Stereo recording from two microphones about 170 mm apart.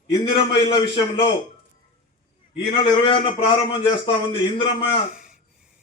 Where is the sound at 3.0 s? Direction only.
30° left (ahead or behind).